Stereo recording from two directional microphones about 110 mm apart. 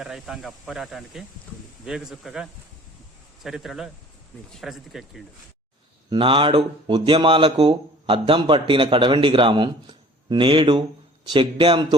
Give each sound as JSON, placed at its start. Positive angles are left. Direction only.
{"t": 0.0, "sound": "speech", "side_deg": -5}
{"t": 6.1, "sound": "speech", "side_deg": -50}